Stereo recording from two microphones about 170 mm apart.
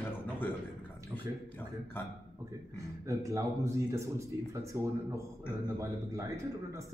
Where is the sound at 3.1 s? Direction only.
20° right (ahead or behind).